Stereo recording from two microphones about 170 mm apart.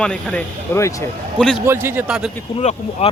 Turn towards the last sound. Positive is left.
turn(degrees=40)  # may be behind; listen again after turning